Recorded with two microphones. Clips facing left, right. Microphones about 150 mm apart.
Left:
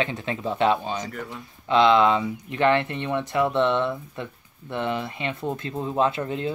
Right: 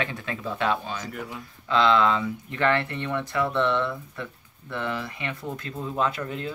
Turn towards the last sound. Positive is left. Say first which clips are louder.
# left 4 dB
turn(degrees=25)  # may be behind; listen again after turning